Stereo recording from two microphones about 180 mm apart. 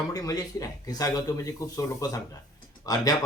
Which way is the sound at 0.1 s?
20° left (ahead or behind).